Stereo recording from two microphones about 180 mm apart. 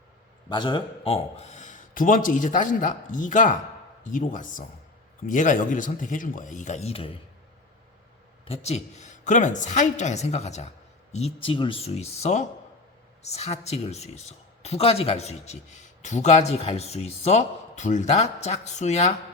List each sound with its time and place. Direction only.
0.4 s a man's voice: 25° left (ahead or behind)
8.4 s speech: 35° left (ahead or behind)